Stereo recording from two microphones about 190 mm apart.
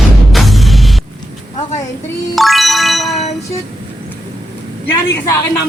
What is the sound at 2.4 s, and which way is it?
Music, centre (ahead or behind).